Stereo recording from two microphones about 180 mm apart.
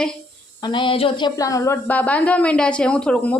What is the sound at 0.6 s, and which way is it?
Speech, 25° left (ahead or behind).